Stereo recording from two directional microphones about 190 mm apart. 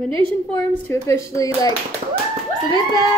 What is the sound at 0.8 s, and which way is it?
Speech, 15° left (ahead or behind).